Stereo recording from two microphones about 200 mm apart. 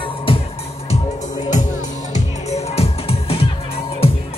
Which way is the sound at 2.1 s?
30° left (ahead or behind).